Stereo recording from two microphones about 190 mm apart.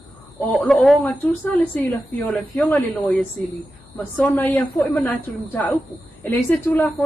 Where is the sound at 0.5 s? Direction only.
Centre (ahead or behind).